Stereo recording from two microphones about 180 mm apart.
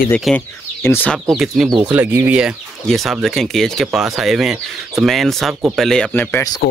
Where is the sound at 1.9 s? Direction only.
10° right (ahead or behind).